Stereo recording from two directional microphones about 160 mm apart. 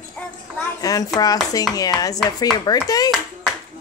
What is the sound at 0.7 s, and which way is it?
Speech, 20° left (ahead or behind).